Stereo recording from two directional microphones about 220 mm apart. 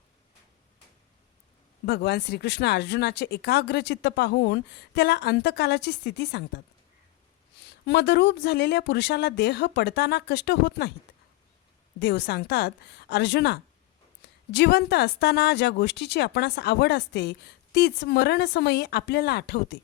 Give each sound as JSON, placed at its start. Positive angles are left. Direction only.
{"t": 1.9, "sound": "speech", "side_deg": 50}
{"t": 7.9, "sound": "speech", "side_deg": 50}
{"t": 11.9, "sound": "speech", "side_deg": 50}